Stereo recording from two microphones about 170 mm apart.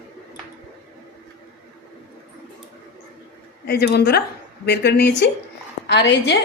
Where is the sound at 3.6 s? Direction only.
70° left (ahead or behind).